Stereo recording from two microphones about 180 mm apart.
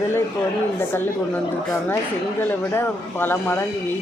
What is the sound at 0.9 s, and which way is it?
Speech, 10° left (ahead or behind).